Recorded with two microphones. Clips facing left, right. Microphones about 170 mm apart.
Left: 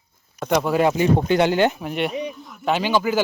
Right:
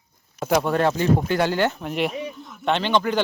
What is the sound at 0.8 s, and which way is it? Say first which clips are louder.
Speech: left 2 dB; 15° left (ahead or behind).